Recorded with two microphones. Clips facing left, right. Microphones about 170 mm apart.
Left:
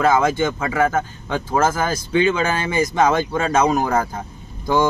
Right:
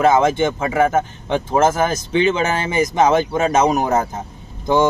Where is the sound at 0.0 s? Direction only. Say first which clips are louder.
Right 2 dB; 25° right (ahead or behind).